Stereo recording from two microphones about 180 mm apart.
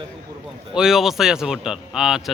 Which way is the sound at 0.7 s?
Centre (ahead or behind).